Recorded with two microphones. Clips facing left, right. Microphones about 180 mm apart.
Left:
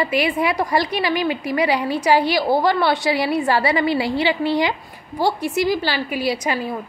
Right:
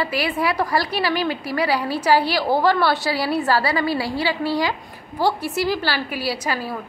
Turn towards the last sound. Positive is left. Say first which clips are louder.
# left 3 dB
turn(degrees=20)  # may be behind; listen again after turning